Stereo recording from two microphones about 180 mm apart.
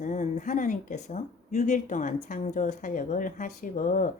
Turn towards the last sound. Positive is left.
turn(degrees=45)  # may be behind; listen again after turning